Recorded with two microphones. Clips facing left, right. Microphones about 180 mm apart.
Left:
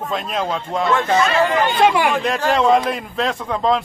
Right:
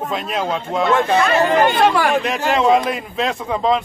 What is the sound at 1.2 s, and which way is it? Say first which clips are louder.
Speech: right 2 dB; 50° right (ahead or behind).